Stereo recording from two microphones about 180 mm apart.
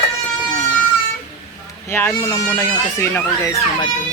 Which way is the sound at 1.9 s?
10° left (ahead or behind).